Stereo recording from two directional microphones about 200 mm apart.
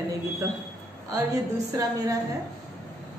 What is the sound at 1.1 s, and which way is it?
A woman's voice, 15° right (ahead or behind).